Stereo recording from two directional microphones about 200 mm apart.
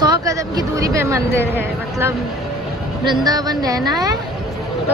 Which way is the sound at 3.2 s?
20° right (ahead or behind).